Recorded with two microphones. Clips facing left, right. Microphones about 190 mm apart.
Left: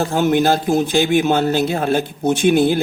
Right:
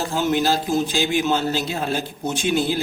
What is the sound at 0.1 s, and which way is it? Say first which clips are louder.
A man's voice: left 3 dB; 55° left (ahead or behind).